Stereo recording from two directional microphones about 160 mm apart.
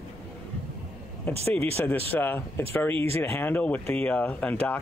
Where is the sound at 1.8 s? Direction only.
10° left (ahead or behind).